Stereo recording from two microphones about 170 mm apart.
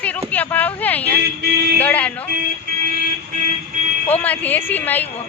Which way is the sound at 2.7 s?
65° right (ahead or behind).